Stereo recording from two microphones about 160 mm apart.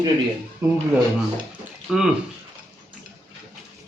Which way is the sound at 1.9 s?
5° right (ahead or behind).